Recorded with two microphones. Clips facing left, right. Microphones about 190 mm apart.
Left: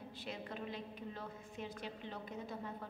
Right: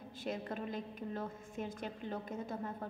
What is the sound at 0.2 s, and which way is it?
A woman's voice, 45° right (ahead or behind).